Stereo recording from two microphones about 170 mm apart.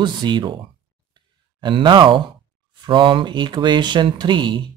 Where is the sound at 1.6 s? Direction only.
30° right (ahead or behind).